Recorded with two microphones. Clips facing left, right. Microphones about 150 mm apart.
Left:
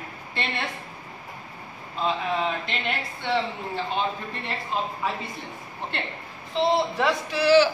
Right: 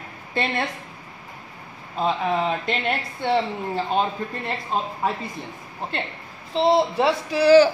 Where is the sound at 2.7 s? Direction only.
45° right (ahead or behind).